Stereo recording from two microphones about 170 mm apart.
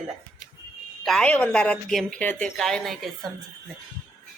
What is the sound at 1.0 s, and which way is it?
A woman's voice, 5° left (ahead or behind).